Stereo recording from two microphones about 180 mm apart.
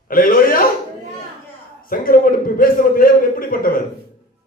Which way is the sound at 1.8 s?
50° left (ahead or behind).